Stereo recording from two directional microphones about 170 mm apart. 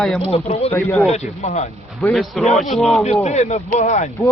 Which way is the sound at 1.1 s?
40° left (ahead or behind).